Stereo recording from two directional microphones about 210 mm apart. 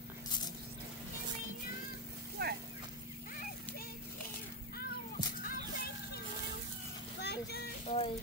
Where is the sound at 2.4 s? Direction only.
45° right (ahead or behind).